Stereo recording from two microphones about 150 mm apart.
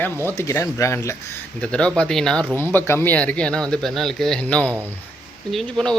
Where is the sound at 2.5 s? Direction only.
15° left (ahead or behind).